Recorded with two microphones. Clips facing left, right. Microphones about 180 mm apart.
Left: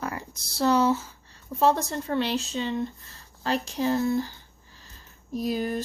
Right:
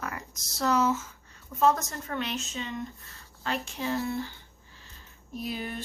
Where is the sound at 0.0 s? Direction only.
30° left (ahead or behind).